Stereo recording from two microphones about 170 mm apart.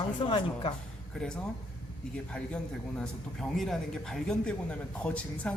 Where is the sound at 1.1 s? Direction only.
5° left (ahead or behind).